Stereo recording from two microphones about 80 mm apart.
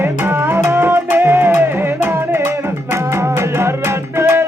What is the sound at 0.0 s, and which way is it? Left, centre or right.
Music, right.